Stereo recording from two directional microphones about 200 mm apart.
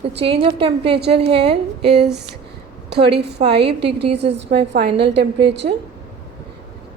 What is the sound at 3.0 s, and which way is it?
Speech, 55° right (ahead or behind).